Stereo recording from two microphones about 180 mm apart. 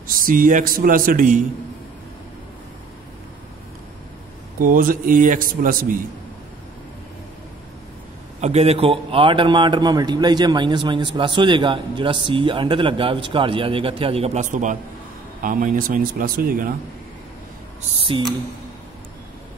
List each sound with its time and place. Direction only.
0.0 s speech: 50° right (ahead or behind)
4.6 s speech: 50° right (ahead or behind)
8.4 s a man's voice: 35° right (ahead or behind); by 16.7 s 50° right (ahead or behind)
17.9 s a sound: 30° right (ahead or behind)